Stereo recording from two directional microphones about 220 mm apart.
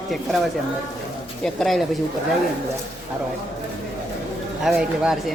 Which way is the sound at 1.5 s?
Centre (ahead or behind).